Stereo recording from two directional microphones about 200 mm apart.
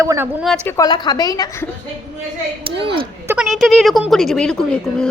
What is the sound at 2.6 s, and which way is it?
Speech, 25° right (ahead or behind).